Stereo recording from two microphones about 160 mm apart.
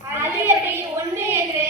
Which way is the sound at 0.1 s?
15° right (ahead or behind).